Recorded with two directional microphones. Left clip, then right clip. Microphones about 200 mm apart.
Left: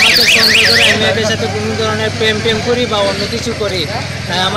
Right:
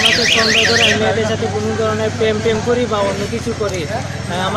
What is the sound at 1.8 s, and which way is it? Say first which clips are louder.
Speech: left 3 dB; 5° left (ahead or behind).